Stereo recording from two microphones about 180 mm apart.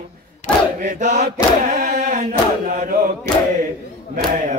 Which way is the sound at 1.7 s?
45° right (ahead or behind).